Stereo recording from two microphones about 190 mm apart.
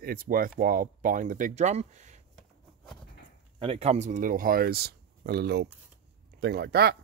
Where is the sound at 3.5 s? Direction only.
30° right (ahead or behind).